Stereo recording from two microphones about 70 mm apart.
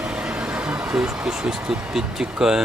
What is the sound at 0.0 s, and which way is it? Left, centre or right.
Speech, centre.